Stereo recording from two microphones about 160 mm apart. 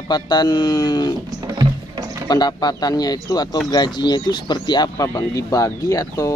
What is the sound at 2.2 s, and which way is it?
Speech, 25° left (ahead or behind).